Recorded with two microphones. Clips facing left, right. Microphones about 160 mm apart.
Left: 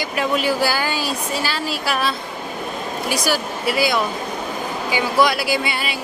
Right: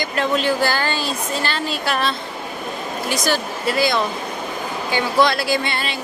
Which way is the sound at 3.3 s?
10° left (ahead or behind).